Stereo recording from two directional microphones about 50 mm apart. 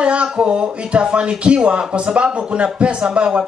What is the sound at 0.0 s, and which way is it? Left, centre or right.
Speech, right.